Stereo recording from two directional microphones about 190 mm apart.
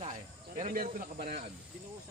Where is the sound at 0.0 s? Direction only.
35° right (ahead or behind).